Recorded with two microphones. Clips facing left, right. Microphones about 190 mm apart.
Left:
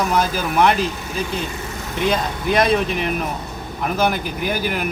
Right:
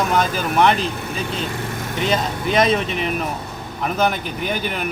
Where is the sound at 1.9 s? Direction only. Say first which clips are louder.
Left 1 dB; centre (ahead or behind).